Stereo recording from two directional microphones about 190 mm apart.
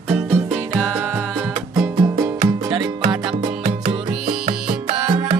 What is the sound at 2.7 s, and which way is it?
Music, 25° right (ahead or behind).